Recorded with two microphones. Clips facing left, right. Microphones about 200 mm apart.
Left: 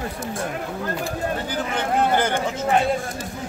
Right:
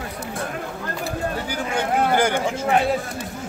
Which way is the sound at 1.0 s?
10° right (ahead or behind).